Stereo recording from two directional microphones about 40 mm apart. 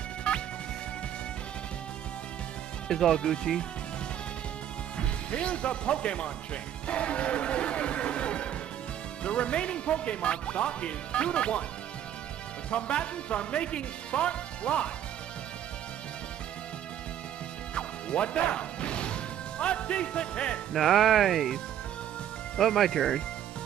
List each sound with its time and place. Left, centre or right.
2.9 s speech: centre
4.9 s speech: left
12.7 s speech: left
17.7 s music: left
20.7 s speech: centre
22.6 s speech: centre